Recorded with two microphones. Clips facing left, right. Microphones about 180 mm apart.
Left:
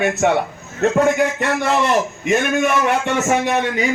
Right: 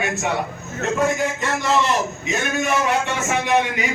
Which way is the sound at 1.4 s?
55° left (ahead or behind).